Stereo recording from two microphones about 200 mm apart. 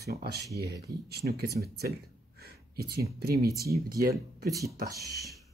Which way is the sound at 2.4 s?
55° right (ahead or behind).